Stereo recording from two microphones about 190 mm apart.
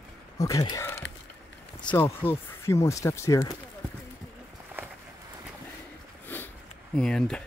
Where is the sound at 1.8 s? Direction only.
10° left (ahead or behind).